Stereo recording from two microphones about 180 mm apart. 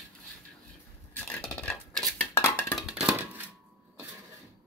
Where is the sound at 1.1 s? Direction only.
5° left (ahead or behind).